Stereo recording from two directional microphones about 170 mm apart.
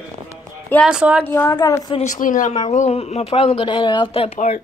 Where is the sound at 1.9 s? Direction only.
45° left (ahead or behind).